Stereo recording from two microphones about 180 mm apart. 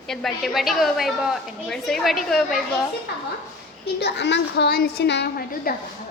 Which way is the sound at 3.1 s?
65° left (ahead or behind).